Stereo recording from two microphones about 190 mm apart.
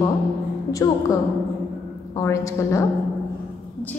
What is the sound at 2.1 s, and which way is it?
Speech, 15° left (ahead or behind).